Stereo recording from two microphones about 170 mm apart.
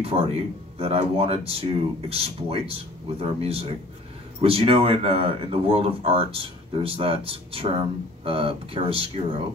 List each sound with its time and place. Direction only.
0.0 s speech: 35° right (ahead or behind)